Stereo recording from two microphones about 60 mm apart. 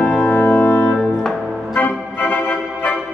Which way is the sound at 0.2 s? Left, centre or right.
Left.